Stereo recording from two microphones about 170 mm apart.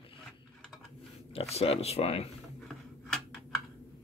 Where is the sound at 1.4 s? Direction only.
35° left (ahead or behind).